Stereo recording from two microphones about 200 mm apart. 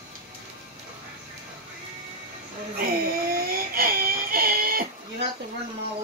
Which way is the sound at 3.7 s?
45° right (ahead or behind).